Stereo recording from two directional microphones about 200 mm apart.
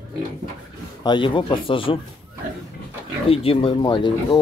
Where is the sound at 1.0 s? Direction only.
25° left (ahead or behind).